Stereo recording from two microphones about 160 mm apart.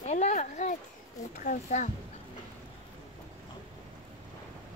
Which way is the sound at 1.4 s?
55° left (ahead or behind).